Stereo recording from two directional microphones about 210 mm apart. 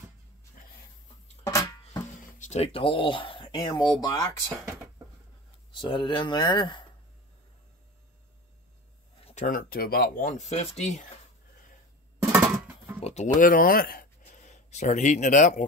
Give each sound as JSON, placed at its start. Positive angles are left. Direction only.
{"t": 1.4, "sound": "a sound", "side_deg": 15}
{"t": 2.3, "sound": "speech", "side_deg": 35}
{"t": 5.7, "sound": "speech", "side_deg": 25}
{"t": 9.2, "sound": "speech", "side_deg": 35}
{"t": 12.2, "sound": "music", "side_deg": -10}
{"t": 13.0, "sound": "speech", "side_deg": 35}